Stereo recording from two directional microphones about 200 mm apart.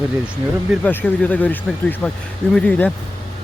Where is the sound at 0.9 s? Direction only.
10° left (ahead or behind).